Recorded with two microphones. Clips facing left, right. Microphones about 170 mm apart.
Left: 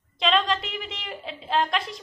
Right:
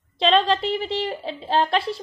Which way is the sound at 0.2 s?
30° right (ahead or behind).